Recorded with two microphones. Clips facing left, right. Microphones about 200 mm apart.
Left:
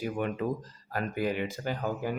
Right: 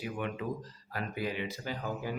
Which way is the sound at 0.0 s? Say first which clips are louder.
Left 5 dB; 45° left (ahead or behind).